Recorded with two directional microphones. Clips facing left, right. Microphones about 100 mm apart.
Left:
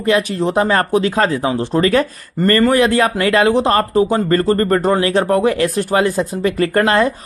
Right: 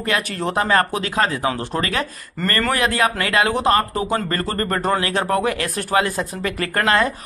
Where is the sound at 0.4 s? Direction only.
25° left (ahead or behind).